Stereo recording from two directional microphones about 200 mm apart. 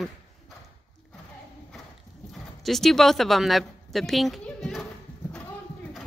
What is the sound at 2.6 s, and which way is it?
A woman's voice, centre (ahead or behind).